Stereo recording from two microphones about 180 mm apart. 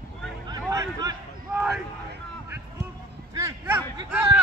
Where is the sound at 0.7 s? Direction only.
15° right (ahead or behind).